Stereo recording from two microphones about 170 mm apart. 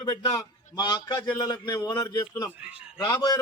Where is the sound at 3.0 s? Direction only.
20° left (ahead or behind).